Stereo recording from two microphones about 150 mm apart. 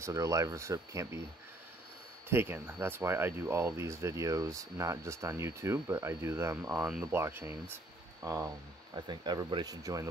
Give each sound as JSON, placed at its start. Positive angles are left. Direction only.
{"t": 0.0, "sound": "speech", "side_deg": -20}
{"t": 2.2, "sound": "speech", "side_deg": -15}
{"t": 7.7, "sound": "a sound", "side_deg": -20}
{"t": 8.9, "sound": "speech", "side_deg": -30}